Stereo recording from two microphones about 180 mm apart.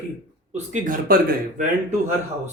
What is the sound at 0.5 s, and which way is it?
Speech, 45° right (ahead or behind).